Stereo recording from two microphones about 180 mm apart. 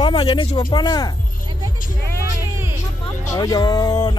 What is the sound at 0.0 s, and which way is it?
Speech, 25° left (ahead or behind).